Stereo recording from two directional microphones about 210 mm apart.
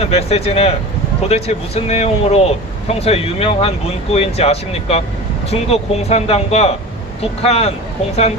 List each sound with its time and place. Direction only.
0.0 s speech: 30° left (ahead or behind)